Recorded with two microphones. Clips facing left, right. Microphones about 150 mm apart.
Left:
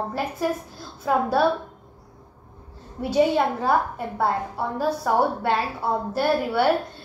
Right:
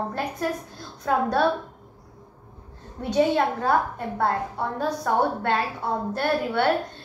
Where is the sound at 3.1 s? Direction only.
5° left (ahead or behind).